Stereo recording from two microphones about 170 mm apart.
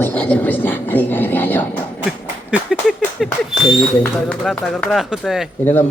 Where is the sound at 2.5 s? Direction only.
5° right (ahead or behind).